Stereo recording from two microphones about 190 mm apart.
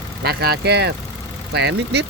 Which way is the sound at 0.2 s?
60° right (ahead or behind).